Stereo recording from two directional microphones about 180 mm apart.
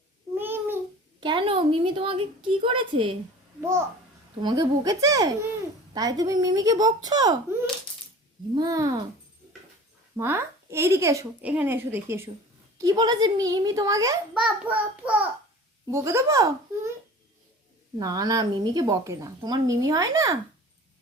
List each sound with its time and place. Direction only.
0.3 s babbling: 10° right (ahead or behind)
1.2 s a woman's voice: 25° right (ahead or behind)
3.6 s a child's voice: 15° right (ahead or behind)
8.5 s a woman's voice: 20° right (ahead or behind)
10.2 s a child's voice: 15° right (ahead or behind)
14.3 s a child's voice: 5° right (ahead or behind)
17.9 s a woman's voice: 20° right (ahead or behind)